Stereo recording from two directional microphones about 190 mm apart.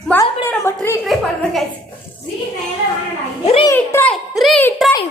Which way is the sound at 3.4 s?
30° left (ahead or behind).